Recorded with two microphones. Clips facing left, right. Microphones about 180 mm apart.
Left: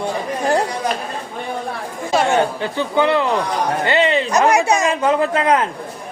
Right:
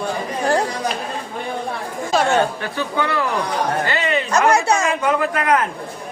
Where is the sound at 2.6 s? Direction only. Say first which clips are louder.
Left 5 dB; 25° left (ahead or behind).